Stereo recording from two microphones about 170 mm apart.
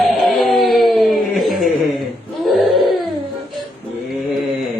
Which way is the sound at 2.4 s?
Centre (ahead or behind).